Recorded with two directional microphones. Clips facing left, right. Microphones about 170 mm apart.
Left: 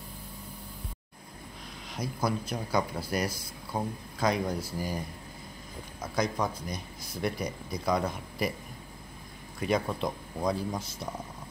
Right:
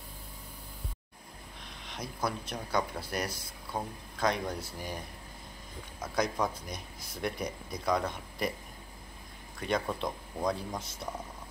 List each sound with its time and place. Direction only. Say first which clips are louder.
1.9 s speech: left 4 dB; 5° left (ahead or behind)
9.6 s speech: left 3 dB; 5° left (ahead or behind)